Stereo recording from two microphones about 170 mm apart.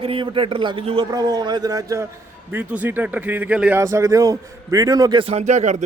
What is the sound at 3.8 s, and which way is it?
A man's voice, 20° right (ahead or behind).